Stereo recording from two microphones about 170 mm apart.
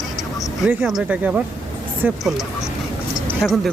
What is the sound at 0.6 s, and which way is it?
Speech, 5° right (ahead or behind).